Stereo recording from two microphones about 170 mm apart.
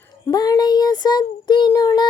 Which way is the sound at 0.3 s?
25° left (ahead or behind).